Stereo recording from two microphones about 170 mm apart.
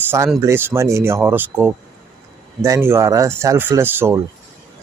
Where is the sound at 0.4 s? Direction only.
15° right (ahead or behind).